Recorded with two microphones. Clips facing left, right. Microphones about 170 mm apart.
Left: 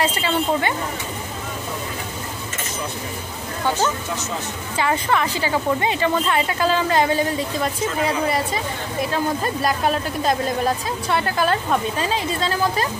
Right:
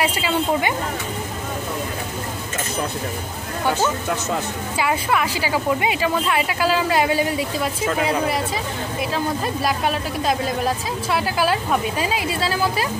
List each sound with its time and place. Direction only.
0.0 s speech: 10° right (ahead or behind)
4.7 s speech: 10° right (ahead or behind)
9.1 s speech: centre (ahead or behind)